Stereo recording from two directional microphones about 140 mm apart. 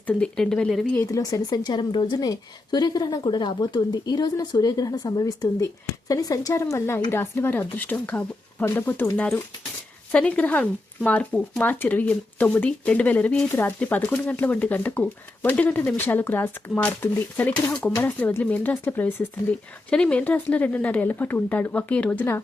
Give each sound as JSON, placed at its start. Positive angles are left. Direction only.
{"t": 0.1, "sound": "speech", "side_deg": 5}
{"t": 0.9, "sound": "speech", "side_deg": 25}